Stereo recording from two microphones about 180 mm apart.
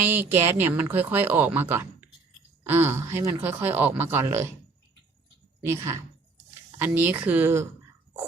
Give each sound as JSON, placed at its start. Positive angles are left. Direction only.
{"t": 0.1, "sound": "speech", "side_deg": -10}
{"t": 5.6, "sound": "speech", "side_deg": -15}